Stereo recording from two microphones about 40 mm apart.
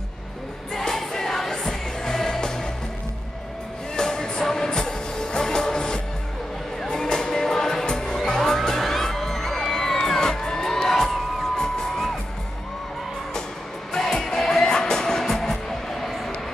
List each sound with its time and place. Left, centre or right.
0.7 s music: centre
3.9 s music: centre
13.9 s music: centre